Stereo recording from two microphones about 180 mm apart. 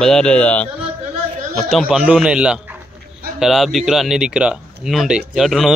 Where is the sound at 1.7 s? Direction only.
Centre (ahead or behind).